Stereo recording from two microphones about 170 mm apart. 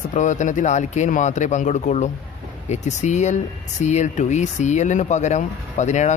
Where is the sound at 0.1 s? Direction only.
45° left (ahead or behind).